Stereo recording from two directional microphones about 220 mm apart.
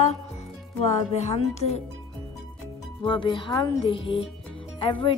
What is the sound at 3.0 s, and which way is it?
A woman's voice, 20° left (ahead or behind).